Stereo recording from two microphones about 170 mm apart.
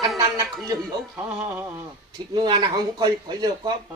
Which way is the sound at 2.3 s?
25° right (ahead or behind).